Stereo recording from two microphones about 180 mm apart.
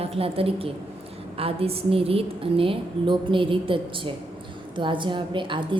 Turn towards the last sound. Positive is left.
turn(degrees=-25)  # may be behind; listen again after turning